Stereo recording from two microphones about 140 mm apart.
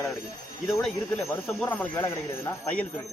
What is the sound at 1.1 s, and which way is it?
Speech, 15° left (ahead or behind).